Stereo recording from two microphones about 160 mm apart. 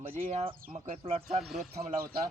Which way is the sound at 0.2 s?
40° right (ahead or behind).